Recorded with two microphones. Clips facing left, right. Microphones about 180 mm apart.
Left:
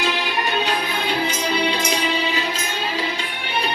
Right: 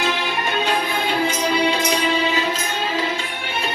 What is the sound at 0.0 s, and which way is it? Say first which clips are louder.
Music: even; 50° right (ahead or behind).